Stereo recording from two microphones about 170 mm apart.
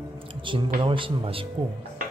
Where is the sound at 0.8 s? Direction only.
30° right (ahead or behind).